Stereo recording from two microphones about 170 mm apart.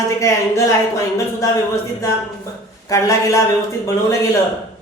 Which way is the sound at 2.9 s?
20° left (ahead or behind).